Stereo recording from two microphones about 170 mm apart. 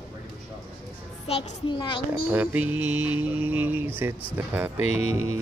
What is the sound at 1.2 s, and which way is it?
Speech, 35° left (ahead or behind).